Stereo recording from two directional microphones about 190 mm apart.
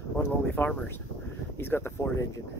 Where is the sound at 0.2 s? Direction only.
10° left (ahead or behind).